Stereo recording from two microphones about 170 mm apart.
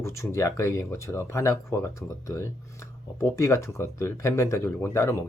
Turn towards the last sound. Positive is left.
turn(degrees=15)  # may be behind; listen again after turning